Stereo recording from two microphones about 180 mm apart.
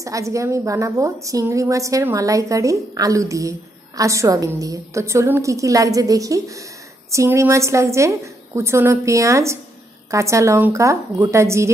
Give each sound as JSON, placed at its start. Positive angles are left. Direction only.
{"t": 0.0, "sound": "a woman's voice", "side_deg": -15}